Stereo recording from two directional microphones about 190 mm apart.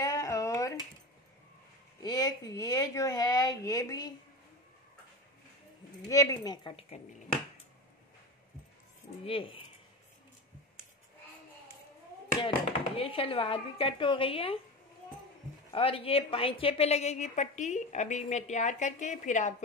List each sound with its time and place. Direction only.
0.0 s a sound: 15° left (ahead or behind)
2.0 s a woman's voice: 20° left (ahead or behind)
6.0 s speech: 20° left (ahead or behind)
9.2 s speech: 30° left (ahead or behind)
12.4 s speech: 25° left (ahead or behind)
15.7 s a woman's voice: 30° left (ahead or behind)